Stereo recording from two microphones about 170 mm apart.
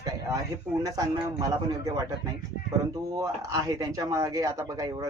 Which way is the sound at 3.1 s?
20° right (ahead or behind).